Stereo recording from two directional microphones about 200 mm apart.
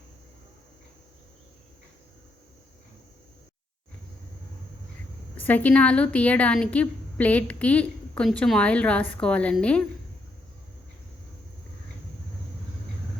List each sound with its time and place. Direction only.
5.4 s a woman's voice: 10° left (ahead or behind)